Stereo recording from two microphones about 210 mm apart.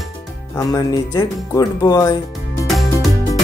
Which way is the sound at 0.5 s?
15° left (ahead or behind).